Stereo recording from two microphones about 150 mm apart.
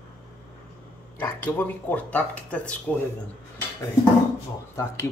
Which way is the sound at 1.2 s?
15° left (ahead or behind).